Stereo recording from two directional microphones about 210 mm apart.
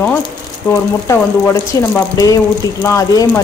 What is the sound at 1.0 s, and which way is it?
Speech, 15° left (ahead or behind).